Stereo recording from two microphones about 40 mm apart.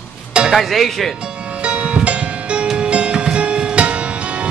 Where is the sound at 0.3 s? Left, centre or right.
Right.